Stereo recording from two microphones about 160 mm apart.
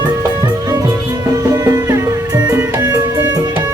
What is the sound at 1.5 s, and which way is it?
Music, 20° right (ahead or behind).